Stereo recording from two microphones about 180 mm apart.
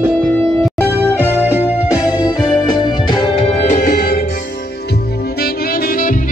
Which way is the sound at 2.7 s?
25° left (ahead or behind).